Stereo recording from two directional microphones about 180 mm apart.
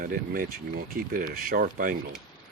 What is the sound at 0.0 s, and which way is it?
Speech, 50° right (ahead or behind).